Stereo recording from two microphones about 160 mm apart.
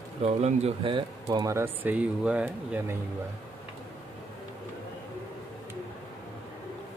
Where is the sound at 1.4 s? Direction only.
15° right (ahead or behind).